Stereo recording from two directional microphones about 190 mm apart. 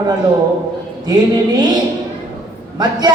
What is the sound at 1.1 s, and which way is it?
Speech, 20° right (ahead or behind).